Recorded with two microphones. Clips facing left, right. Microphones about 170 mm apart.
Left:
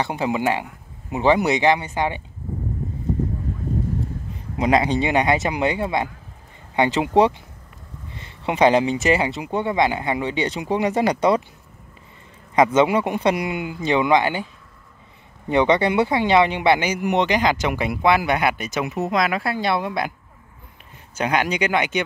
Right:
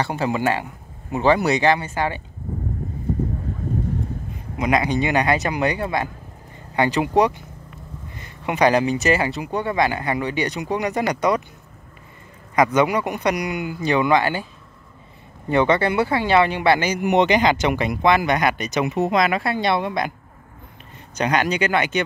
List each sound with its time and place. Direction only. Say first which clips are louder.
0.0 s speech: even; 15° left (ahead or behind)
4.6 s speech: left 2 dB; 30° left (ahead or behind)
12.5 s speech: left 1 dB; 25° left (ahead or behind)
17.0 s speech: right 2 dB; 5° right (ahead or behind)
21.1 s speech: right 1 dB; 10° left (ahead or behind)